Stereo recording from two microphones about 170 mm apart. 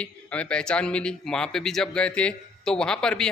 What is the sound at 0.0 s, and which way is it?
A man's voice, 5° left (ahead or behind).